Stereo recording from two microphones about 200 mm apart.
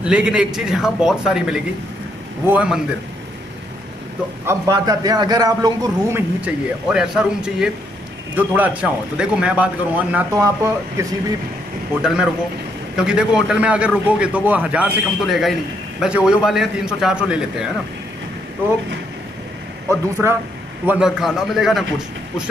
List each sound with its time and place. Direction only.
0.0 s a man's voice: 5° right (ahead or behind)
4.5 s a man's voice: 20° right (ahead or behind)
6.4 s a man's voice: 5° right (ahead or behind)
11.9 s a man's voice: 5° right (ahead or behind)
19.9 s a man's voice: 15° right (ahead or behind)